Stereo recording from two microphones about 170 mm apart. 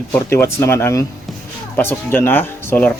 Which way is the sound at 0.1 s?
15° left (ahead or behind).